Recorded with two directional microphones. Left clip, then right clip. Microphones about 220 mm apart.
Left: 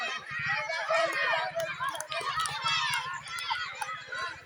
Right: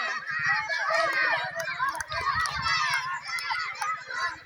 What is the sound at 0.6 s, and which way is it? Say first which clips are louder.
Run: right 3 dB; 50° right (ahead or behind).